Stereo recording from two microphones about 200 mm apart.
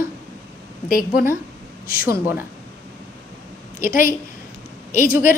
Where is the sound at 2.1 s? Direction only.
10° right (ahead or behind).